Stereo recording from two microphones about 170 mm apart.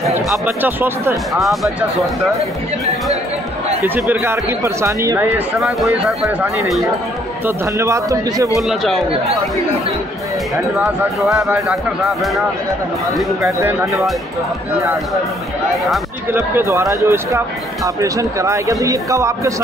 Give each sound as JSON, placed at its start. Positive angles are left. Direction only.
{"t": 0.5, "sound": "speech", "side_deg": -10}
{"t": 1.3, "sound": "speech", "side_deg": 0}
{"t": 3.8, "sound": "speech", "side_deg": -10}
{"t": 8.5, "sound": "speech", "side_deg": 0}
{"t": 11.3, "sound": "speech", "side_deg": -15}
{"t": 13.4, "sound": "speech", "side_deg": -15}
{"t": 16.3, "sound": "speech", "side_deg": -15}